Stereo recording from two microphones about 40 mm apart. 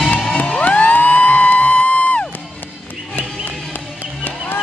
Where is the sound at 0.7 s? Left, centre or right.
Left.